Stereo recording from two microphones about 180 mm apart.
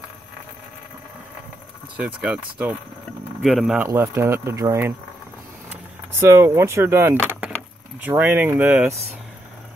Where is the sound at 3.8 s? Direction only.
15° right (ahead or behind).